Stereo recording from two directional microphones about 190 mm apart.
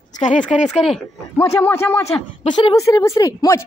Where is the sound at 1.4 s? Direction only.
15° left (ahead or behind).